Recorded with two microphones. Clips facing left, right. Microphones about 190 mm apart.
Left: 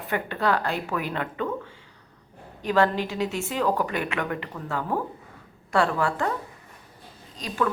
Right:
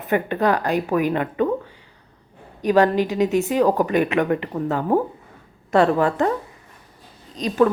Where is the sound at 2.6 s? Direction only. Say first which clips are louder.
Right 6 dB; 15° right (ahead or behind).